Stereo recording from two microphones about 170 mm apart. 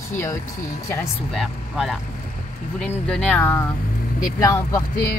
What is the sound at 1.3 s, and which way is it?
Speech, centre (ahead or behind).